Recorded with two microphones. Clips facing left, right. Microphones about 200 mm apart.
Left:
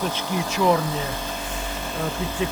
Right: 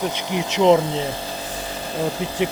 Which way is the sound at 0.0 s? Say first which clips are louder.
Right 2 dB; 20° right (ahead or behind).